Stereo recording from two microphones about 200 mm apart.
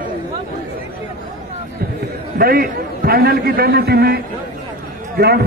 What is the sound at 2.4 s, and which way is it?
A man's voice, 50° right (ahead or behind).